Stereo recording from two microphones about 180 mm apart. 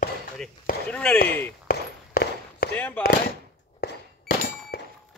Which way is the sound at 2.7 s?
5° left (ahead or behind).